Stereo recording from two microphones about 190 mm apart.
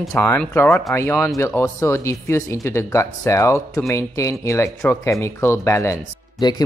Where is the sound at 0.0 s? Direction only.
5° left (ahead or behind).